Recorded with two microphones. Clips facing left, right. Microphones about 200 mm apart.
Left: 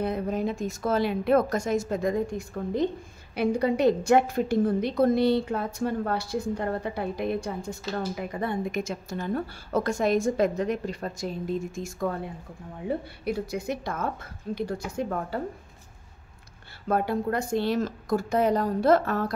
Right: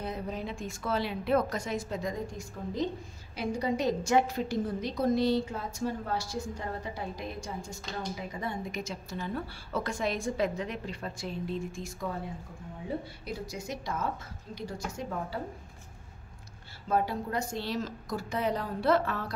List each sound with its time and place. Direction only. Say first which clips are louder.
0.0 s a woman's voice: left 8 dB; 55° left (ahead or behind)
12.8 s a woman's voice: left 7 dB; 60° left (ahead or behind)
16.8 s a woman's voice: left 4 dB; 60° left (ahead or behind)